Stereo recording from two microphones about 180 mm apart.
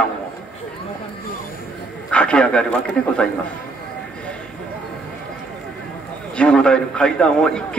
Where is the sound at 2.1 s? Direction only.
5° left (ahead or behind).